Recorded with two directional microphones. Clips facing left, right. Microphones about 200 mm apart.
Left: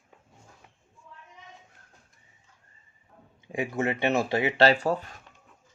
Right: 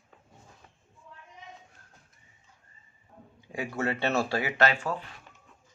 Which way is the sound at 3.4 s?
20° left (ahead or behind).